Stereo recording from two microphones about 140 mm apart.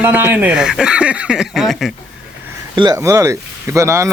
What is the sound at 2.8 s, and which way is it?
Speech, 25° right (ahead or behind).